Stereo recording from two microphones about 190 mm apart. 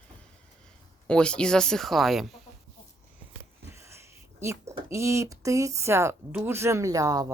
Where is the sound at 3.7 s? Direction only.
15° right (ahead or behind).